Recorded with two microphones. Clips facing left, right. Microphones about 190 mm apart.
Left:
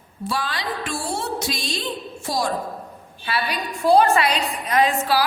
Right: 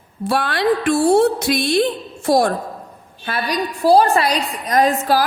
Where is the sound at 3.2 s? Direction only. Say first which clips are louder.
Right 3 dB; 45° right (ahead or behind).